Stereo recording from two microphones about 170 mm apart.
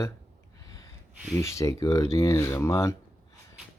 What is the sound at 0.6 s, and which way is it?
Gasp, 20° left (ahead or behind).